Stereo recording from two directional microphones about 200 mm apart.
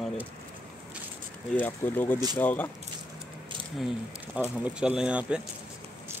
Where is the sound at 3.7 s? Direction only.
Centre (ahead or behind).